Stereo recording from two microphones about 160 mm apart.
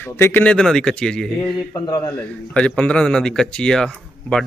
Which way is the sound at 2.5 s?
5° left (ahead or behind).